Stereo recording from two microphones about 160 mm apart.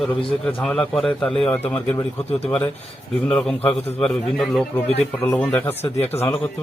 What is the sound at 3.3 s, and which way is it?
A man's voice, 5° left (ahead or behind).